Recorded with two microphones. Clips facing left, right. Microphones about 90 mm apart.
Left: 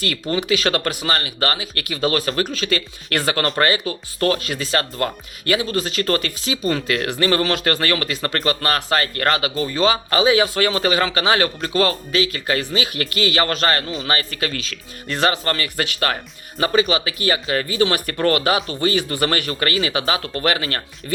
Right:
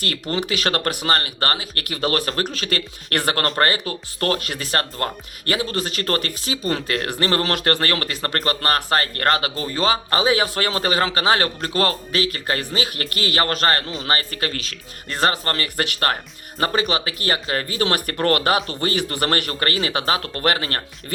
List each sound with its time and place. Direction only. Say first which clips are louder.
0.3 s speech: left 3 dB; 50° right (ahead or behind)